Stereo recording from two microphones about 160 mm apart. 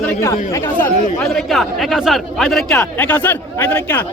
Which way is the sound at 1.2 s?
Centre (ahead or behind).